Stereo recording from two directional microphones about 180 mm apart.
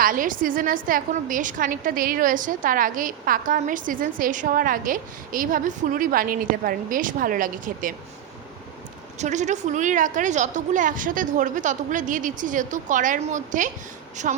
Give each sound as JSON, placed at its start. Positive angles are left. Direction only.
{"t": 0.0, "sound": "a woman's voice", "side_deg": -50}
{"t": 9.1, "sound": "a woman's voice", "side_deg": -40}